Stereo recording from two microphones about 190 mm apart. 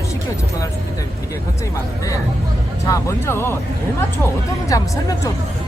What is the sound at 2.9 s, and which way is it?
Speech, 15° left (ahead or behind).